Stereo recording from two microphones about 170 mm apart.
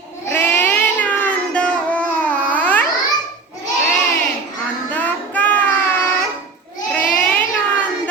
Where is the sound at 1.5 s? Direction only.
5° left (ahead or behind).